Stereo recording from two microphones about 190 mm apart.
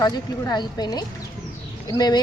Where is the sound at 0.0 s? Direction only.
20° left (ahead or behind).